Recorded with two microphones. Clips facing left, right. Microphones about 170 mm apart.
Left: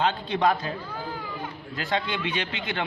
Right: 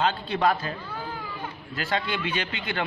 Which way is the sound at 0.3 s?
20° left (ahead or behind).